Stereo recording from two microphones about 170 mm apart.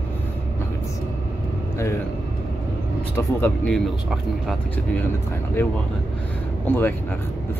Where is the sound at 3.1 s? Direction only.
15° left (ahead or behind).